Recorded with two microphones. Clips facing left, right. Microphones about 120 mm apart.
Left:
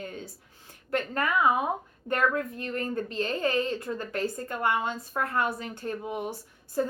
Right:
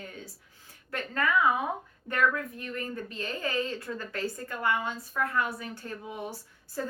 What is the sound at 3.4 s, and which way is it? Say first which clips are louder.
A woman's voice: left 2 dB; 25° left (ahead or behind).